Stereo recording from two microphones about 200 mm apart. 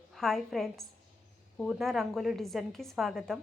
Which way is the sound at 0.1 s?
Centre (ahead or behind).